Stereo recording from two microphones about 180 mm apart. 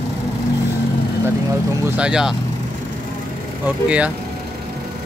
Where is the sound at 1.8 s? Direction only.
5° right (ahead or behind).